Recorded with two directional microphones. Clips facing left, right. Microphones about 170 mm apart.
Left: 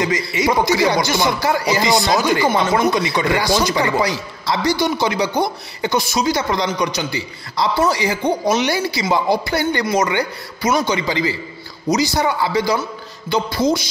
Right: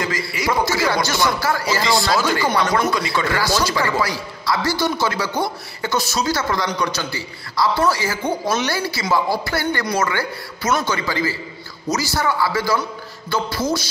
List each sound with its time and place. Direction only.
0.0 s a man's voice: 20° left (ahead or behind)